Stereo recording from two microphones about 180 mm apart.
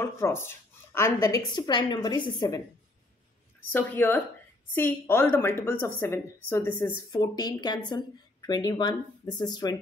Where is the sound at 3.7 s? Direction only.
10° left (ahead or behind).